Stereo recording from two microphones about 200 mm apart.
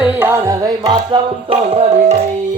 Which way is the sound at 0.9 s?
25° right (ahead or behind).